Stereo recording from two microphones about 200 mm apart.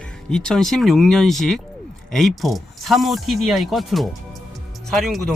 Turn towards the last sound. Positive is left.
turn(degrees=0)  # may be behind; listen again after turning